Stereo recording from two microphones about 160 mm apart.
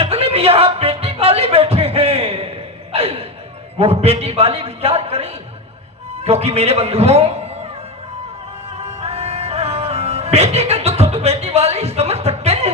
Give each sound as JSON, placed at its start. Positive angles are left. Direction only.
{"t": 0.0, "sound": "music", "side_deg": -40}
{"t": 2.9, "sound": "a sound", "side_deg": -40}
{"t": 3.8, "sound": "a man's voice", "side_deg": -40}
{"t": 8.8, "sound": "music", "side_deg": -40}